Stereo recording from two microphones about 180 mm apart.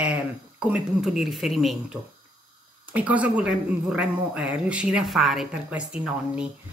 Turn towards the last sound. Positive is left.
turn(degrees=-5)  # may be behind; listen again after turning